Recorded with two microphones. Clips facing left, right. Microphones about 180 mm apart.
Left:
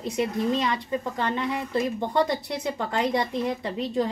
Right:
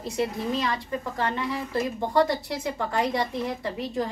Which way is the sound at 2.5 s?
20° left (ahead or behind).